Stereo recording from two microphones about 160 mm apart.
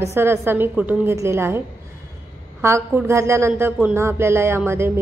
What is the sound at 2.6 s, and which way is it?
A woman's voice, 15° right (ahead or behind).